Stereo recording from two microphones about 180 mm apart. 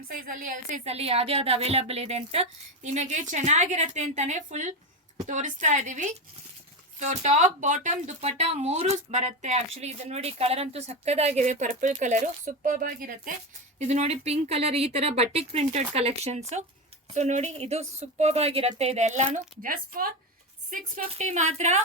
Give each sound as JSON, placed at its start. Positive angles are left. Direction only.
{"t": 0.1, "sound": "a woman's voice", "side_deg": -50}
{"t": 13.7, "sound": "speech", "side_deg": -40}